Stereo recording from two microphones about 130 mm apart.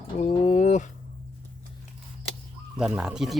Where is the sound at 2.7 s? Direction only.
5° right (ahead or behind).